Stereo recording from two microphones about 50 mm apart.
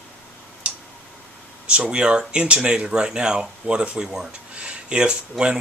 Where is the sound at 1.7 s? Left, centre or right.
Right.